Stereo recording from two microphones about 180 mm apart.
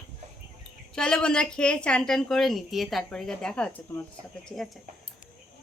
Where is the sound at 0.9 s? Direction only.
5° left (ahead or behind).